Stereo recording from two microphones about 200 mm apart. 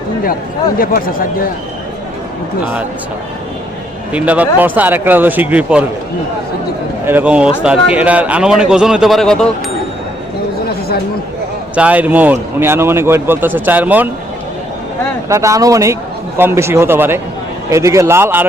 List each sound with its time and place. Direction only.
0.8 s speech: 45° left (ahead or behind)
4.1 s a man's voice: 5° right (ahead or behind)
7.1 s a man's voice: 5° right (ahead or behind)
11.7 s a man's voice: 5° right (ahead or behind)
15.3 s a man's voice: 15° right (ahead or behind)